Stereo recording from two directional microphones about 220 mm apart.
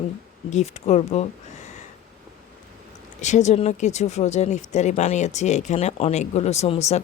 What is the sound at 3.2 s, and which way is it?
A woman's voice, 30° left (ahead or behind).